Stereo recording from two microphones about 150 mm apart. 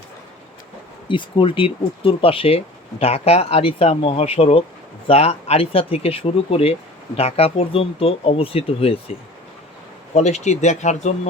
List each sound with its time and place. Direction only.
1.0 s speech: 35° left (ahead or behind)
10.2 s speech: 50° left (ahead or behind)